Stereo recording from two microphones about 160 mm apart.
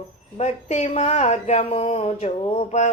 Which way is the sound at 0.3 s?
45° left (ahead or behind).